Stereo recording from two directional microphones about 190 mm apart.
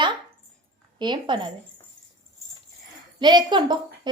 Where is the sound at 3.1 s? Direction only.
25° right (ahead or behind).